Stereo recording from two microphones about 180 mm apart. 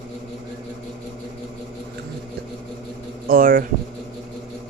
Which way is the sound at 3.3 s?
50° right (ahead or behind).